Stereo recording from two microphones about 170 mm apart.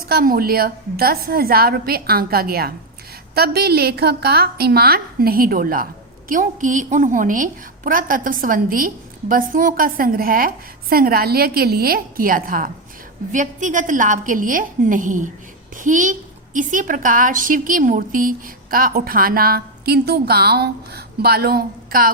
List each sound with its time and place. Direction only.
0.1 s a woman's voice: 60° right (ahead or behind)